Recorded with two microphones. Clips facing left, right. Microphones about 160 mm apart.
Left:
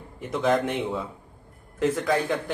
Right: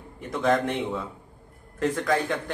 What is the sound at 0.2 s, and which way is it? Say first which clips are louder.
Speech: even; 5° left (ahead or behind).